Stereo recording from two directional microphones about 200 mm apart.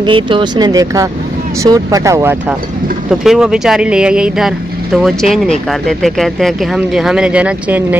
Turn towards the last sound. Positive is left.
turn(degrees=-5)  # may be behind; listen again after turning